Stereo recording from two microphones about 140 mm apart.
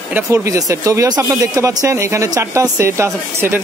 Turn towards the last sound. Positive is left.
turn(degrees=-20)  # may be behind; listen again after turning